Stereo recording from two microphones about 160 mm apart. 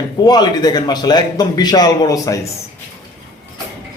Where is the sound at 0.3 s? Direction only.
25° left (ahead or behind).